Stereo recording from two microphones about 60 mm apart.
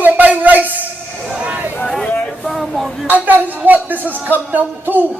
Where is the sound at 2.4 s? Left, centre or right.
Centre.